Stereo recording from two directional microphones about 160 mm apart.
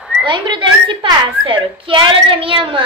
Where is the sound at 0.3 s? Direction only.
30° right (ahead or behind).